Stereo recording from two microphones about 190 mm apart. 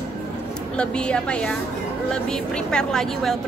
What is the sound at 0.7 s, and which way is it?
Speech, 5° left (ahead or behind).